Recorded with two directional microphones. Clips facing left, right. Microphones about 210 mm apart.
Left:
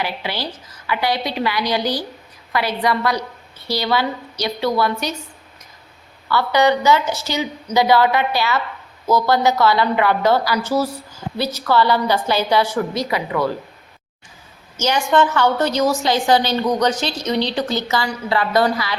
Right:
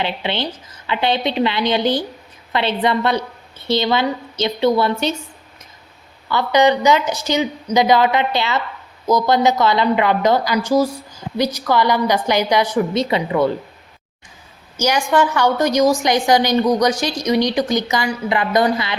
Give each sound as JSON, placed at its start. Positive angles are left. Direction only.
{"t": 0.0, "sound": "a woman's voice", "side_deg": -25}
{"t": 6.2, "sound": "a woman's voice", "side_deg": -20}
{"t": 14.8, "sound": "a woman's voice", "side_deg": -10}